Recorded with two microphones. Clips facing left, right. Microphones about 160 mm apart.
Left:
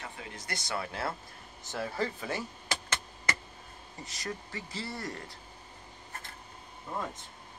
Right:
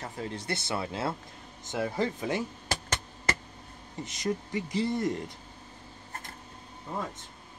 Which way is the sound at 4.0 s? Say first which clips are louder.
Right 8 dB; 20° right (ahead or behind).